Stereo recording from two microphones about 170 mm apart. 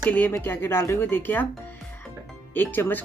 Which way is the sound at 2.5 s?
10° left (ahead or behind).